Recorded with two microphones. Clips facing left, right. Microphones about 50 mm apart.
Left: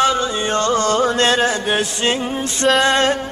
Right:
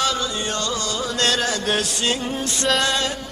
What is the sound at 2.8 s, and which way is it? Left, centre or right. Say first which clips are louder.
Music: left 7 dB; left.